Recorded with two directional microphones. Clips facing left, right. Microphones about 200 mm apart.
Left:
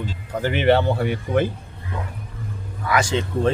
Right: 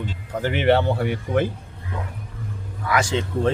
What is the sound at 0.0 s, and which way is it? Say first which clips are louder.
Speech: left 1 dB; 35° left (ahead or behind).